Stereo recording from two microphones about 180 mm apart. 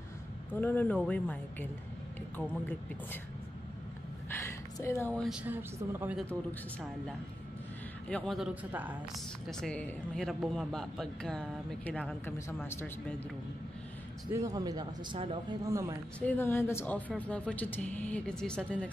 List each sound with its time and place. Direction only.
0.5 s speech: 10° left (ahead or behind)
4.3 s a sound: 15° left (ahead or behind)
5.2 s a woman's voice: 5° right (ahead or behind)
8.1 s speech: centre (ahead or behind)
9.5 s speech: 5° left (ahead or behind)
14.3 s a man's voice: 20° right (ahead or behind)
16.2 s speech: 10° left (ahead or behind)